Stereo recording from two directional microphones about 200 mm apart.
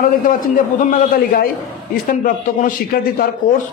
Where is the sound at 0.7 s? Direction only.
45° left (ahead or behind).